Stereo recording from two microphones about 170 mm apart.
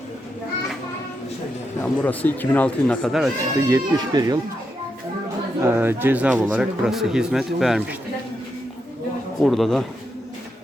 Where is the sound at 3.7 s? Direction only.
20° right (ahead or behind).